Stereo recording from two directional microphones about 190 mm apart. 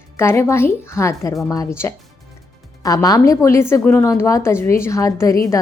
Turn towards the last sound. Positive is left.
turn(degrees=15)  # may be behind; listen again after turning